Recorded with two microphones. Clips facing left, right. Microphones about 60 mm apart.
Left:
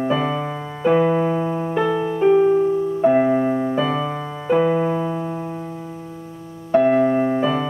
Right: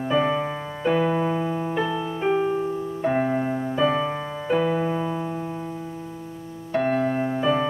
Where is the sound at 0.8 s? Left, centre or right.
Centre.